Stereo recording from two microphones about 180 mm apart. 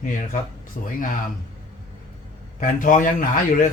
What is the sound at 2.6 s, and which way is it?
A man's voice, 45° left (ahead or behind).